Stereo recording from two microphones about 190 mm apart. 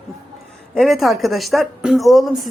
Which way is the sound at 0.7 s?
Centre (ahead or behind).